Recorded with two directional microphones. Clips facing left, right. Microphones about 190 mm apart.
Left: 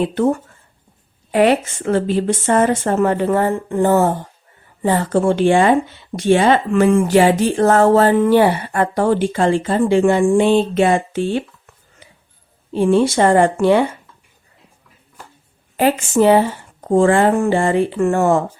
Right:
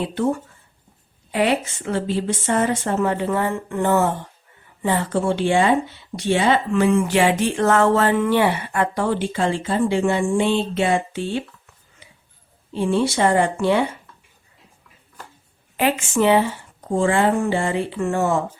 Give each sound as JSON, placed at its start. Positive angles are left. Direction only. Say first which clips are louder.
{"t": 0.0, "sound": "a woman's voice", "louder": "left 5 dB", "side_deg": 50}
{"t": 12.7, "sound": "a woman's voice", "louder": "left 6 dB", "side_deg": 50}
{"t": 15.8, "sound": "a woman's voice", "louder": "left 5 dB", "side_deg": 40}